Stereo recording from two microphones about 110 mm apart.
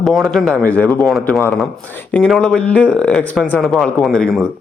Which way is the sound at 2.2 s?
5° left (ahead or behind).